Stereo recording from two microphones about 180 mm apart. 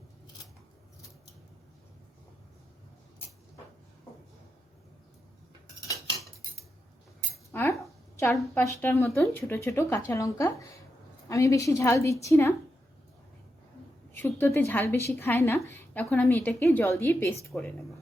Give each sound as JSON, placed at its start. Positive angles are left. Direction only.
{"t": 7.5, "sound": "a sound", "side_deg": 10}
{"t": 8.3, "sound": "a woman's voice", "side_deg": 0}
{"t": 8.6, "sound": "a woman's voice", "side_deg": 15}
{"t": 14.1, "sound": "a woman's voice", "side_deg": 10}